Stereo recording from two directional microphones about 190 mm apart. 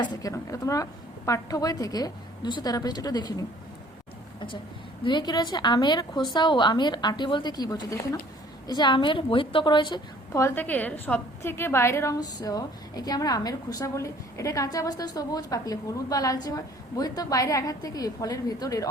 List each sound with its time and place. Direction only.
0.0 s a woman's voice: 20° left (ahead or behind)
5.0 s a woman's voice: 25° left (ahead or behind)